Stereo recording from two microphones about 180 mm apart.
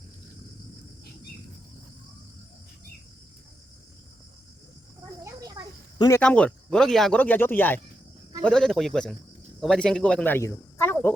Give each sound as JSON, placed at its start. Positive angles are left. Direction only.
{"t": 5.2, "sound": "a sound", "side_deg": -20}
{"t": 6.0, "sound": "speech", "side_deg": 15}
{"t": 6.2, "sound": "a man's voice", "side_deg": 5}